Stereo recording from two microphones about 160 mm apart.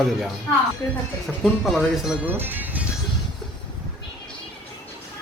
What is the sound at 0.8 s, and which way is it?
Speech, 20° left (ahead or behind).